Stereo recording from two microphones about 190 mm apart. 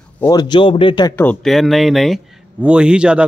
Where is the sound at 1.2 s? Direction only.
5° left (ahead or behind).